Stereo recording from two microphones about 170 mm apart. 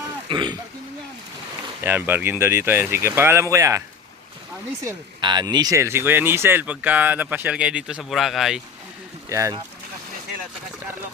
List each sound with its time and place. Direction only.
0.3 s speech: 25° right (ahead or behind)
1.8 s speech: 10° right (ahead or behind)
4.9 s speech: 25° right (ahead or behind); by 8.6 s centre (ahead or behind)
9.3 s speech: 20° right (ahead or behind)